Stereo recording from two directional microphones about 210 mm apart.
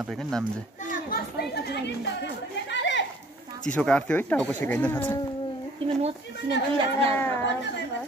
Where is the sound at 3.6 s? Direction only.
5° left (ahead or behind).